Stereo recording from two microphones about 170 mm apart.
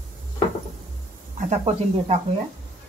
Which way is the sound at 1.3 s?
40° right (ahead or behind).